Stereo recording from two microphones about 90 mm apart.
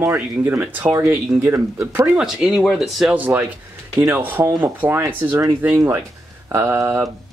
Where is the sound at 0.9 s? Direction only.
35° right (ahead or behind).